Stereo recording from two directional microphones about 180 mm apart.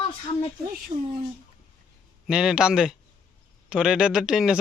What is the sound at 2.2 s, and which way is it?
Speech, 5° right (ahead or behind).